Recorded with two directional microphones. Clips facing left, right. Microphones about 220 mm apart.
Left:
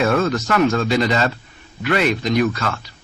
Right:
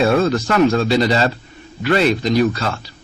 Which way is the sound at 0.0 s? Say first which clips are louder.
Right 3 dB; 30° right (ahead or behind).